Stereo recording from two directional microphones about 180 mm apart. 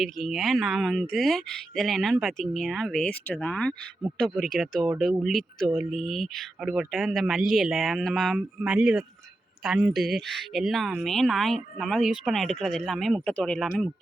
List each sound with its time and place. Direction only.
0.0 s speech: centre (ahead or behind)